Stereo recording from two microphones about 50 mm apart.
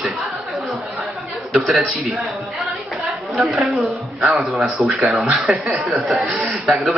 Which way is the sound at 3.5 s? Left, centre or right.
Centre.